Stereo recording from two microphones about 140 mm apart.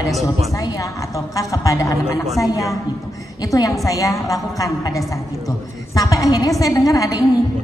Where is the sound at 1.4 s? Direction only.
25° left (ahead or behind).